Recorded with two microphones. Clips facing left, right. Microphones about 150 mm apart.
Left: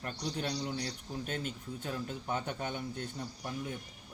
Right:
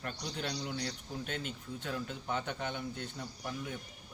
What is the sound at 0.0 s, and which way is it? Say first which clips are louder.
Speech: left 2 dB; 35° left (ahead or behind).